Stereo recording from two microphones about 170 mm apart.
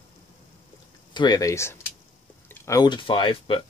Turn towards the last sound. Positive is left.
turn(degrees=30)  # may be behind; listen again after turning